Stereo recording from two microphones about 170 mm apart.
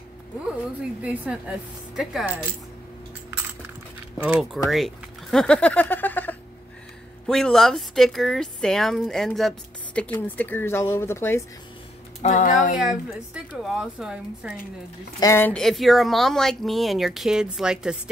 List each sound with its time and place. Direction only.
1.0 s speech: 10° right (ahead or behind)
4.2 s speech: 10° right (ahead or behind); by 11.4 s 15° left (ahead or behind)
12.2 s speech: 45° left (ahead or behind)
12.7 s speech: 5° right (ahead or behind)
15.1 s speech: 15° left (ahead or behind); by 17.9 s 5° right (ahead or behind)